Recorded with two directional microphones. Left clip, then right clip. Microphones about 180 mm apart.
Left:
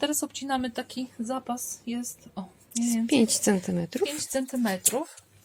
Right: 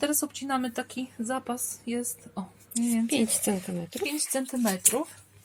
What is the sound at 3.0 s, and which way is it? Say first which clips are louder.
Speech: left 8 dB; 40° left (ahead or behind).